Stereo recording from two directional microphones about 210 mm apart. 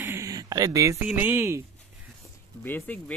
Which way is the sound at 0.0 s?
15° right (ahead or behind).